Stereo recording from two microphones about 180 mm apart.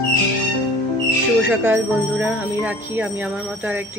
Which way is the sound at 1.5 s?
10° right (ahead or behind).